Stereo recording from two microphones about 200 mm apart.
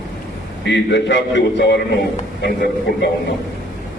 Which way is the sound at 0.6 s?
60° left (ahead or behind).